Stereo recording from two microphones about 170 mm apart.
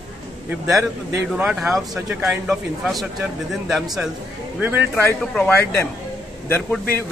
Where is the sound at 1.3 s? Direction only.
10° right (ahead or behind).